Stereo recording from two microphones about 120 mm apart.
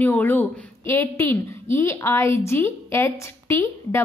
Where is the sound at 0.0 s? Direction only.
15° left (ahead or behind).